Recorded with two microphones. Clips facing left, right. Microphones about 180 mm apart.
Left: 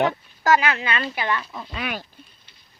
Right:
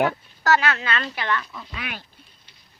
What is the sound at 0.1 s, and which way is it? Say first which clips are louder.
Speech: left 2 dB; 15° left (ahead or behind).